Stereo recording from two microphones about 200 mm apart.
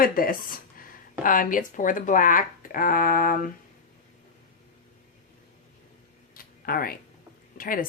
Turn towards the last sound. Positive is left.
turn(degrees=45)  # may be behind; listen again after turning